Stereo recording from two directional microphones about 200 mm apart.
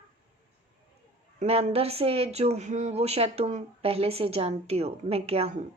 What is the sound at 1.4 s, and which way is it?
Speech, 35° right (ahead or behind).